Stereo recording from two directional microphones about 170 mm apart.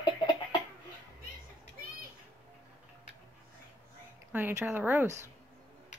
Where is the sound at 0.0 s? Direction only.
25° left (ahead or behind).